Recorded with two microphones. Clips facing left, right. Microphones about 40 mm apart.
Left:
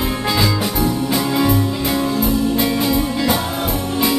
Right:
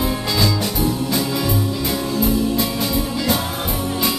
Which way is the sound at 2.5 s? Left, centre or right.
Centre.